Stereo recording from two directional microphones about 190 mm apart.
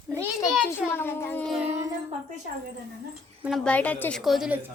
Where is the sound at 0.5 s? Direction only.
5° left (ahead or behind).